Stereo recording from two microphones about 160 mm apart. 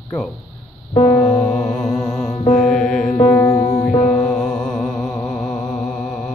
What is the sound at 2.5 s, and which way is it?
Mantra, 5° left (ahead or behind).